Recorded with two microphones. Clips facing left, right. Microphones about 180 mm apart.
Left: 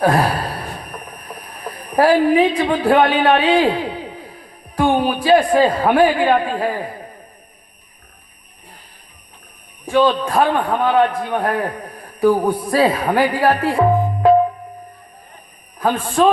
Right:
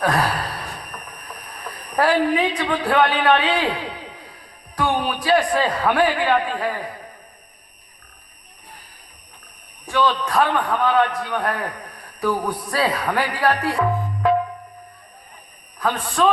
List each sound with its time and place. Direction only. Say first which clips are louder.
0.0 s a sound: left 5 dB; 30° left (ahead or behind)
2.6 s a man's voice: left 5 dB; 30° left (ahead or behind)
4.9 s a man's voice: left 5 dB; 30° left (ahead or behind)
9.8 s a man's voice: left 5 dB; 30° left (ahead or behind)
11.0 s a man's voice: left 5 dB; 50° left (ahead or behind)
11.3 s a man's voice: left 5 dB; 30° left (ahead or behind)
16.0 s a man's voice: left 4 dB; 30° left (ahead or behind)